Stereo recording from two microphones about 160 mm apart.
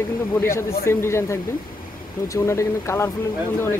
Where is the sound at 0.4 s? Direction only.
15° left (ahead or behind).